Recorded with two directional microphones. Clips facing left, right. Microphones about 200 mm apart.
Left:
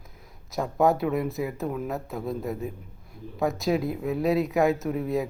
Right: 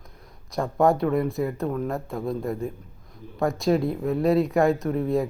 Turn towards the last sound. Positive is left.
turn(degrees=0)  # may be behind; listen again after turning